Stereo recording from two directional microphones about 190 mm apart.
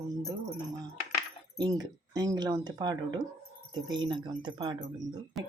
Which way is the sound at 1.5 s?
20° right (ahead or behind).